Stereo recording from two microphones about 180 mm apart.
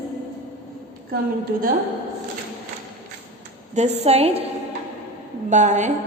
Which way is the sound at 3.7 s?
35° right (ahead or behind).